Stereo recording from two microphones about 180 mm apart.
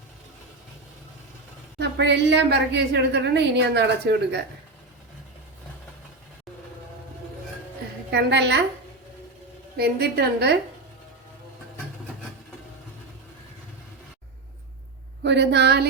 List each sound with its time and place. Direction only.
1.8 s a woman's voice: 75° right (ahead or behind)
8.1 s a woman's voice: 70° right (ahead or behind)
9.7 s a woman's voice: 65° right (ahead or behind)
15.2 s a woman's voice: 75° right (ahead or behind)